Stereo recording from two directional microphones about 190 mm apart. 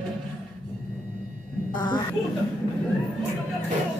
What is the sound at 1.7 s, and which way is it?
Speech, 25° left (ahead or behind).